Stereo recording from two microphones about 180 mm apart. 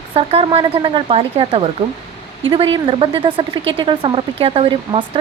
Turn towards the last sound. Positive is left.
turn(degrees=-30)  # may be behind; listen again after turning